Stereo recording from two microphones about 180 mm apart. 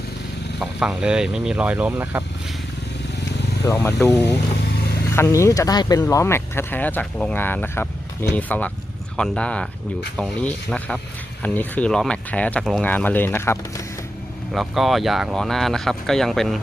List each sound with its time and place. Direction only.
0.6 s speech: 5° right (ahead or behind)
3.7 s speech: 15° left (ahead or behind)
3.9 s speech: 5° left (ahead or behind)
5.1 s speech: 15° left (ahead or behind)
14.5 s speech: centre (ahead or behind)